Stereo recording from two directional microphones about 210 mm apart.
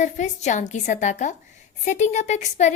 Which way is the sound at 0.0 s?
35° left (ahead or behind).